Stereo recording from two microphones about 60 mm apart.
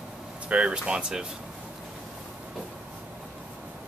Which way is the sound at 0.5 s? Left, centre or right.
Centre.